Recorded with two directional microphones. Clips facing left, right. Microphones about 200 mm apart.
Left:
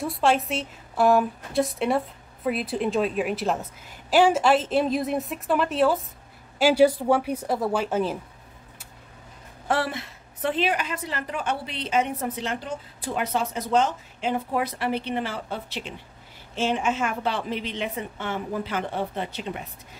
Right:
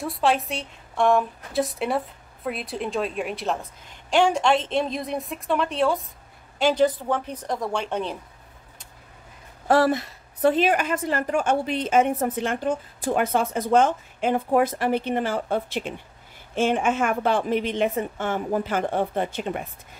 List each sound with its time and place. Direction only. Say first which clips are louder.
0.0 s a woman's voice: even; centre (ahead or behind)
9.7 s a woman's voice: right 7 dB; 40° right (ahead or behind)